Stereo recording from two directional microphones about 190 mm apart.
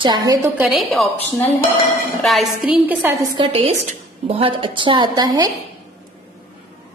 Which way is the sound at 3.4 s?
30° right (ahead or behind).